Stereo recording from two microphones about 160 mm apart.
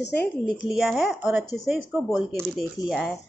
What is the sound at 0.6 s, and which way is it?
Speech, centre (ahead or behind).